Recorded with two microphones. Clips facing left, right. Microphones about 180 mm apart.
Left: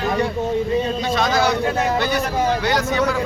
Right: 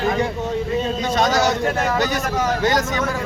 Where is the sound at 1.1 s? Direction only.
45° right (ahead or behind).